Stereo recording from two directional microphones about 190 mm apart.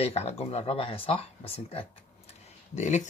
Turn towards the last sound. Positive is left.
turn(degrees=40)  # may be behind; listen again after turning